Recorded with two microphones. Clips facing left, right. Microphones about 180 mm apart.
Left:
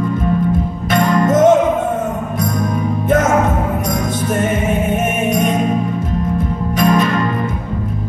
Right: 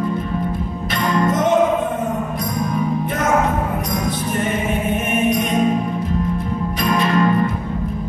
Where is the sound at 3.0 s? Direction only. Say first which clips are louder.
Left 7 dB; 45° left (ahead or behind).